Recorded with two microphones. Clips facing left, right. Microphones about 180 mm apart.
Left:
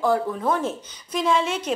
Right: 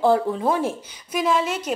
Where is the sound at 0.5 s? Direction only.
10° right (ahead or behind).